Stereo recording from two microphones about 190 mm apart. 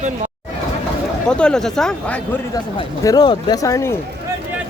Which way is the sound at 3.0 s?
20° left (ahead or behind).